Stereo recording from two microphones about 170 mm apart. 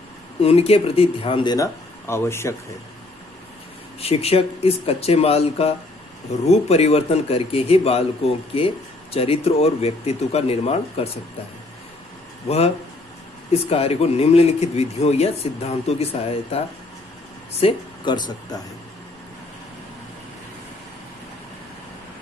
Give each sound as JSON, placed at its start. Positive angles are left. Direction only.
{"t": 0.4, "sound": "speech", "side_deg": 35}
{"t": 4.0, "sound": "speech", "side_deg": 35}
{"t": 12.4, "sound": "speech", "side_deg": 35}